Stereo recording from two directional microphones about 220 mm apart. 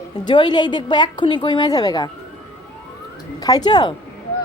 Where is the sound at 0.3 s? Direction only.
20° left (ahead or behind).